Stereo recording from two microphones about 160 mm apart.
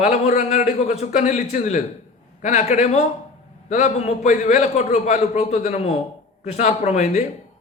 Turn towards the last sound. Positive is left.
turn(degrees=45)  # may be behind; listen again after turning